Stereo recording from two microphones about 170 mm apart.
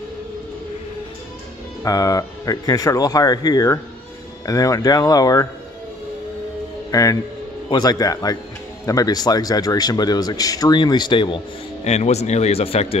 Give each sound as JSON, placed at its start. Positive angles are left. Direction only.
{"t": 1.8, "sound": "speech", "side_deg": 20}
{"t": 6.9, "sound": "a man's voice", "side_deg": 20}
{"t": 11.8, "sound": "speech", "side_deg": 40}